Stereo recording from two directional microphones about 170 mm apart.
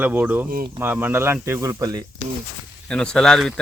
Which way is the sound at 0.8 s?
10° right (ahead or behind).